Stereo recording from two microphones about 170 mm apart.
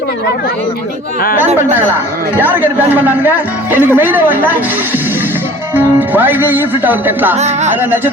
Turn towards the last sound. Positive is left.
turn(degrees=-10)  # may be behind; listen again after turning